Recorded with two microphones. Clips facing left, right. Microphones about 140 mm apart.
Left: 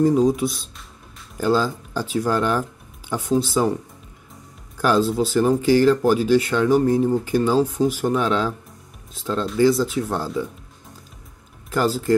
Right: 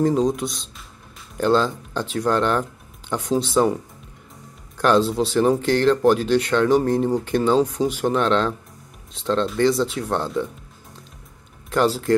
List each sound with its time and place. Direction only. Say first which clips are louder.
0.0 s speech: left 2 dB; 5° left (ahead or behind)
4.7 s speech: right 1 dB; 5° left (ahead or behind)
11.7 s speech: right 1 dB; centre (ahead or behind)